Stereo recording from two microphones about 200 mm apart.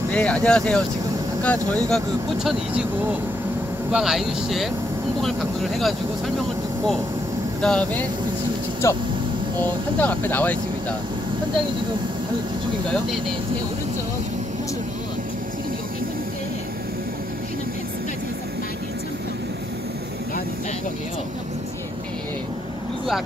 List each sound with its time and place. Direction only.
0.1 s speech: 5° left (ahead or behind)
3.9 s speech: centre (ahead or behind)
7.6 s speech: 5° left (ahead or behind)